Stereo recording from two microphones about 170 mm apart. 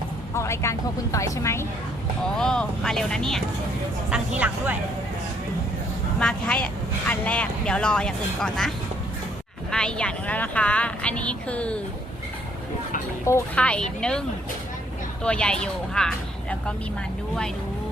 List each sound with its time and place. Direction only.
0.3 s speech: 15° left (ahead or behind)
2.3 s speech: 5° left (ahead or behind)
4.4 s speech: 10° right (ahead or behind)
6.1 s speech: 5° left (ahead or behind)
9.7 s speech: 5° left (ahead or behind)
13.2 s speech: 10° left (ahead or behind)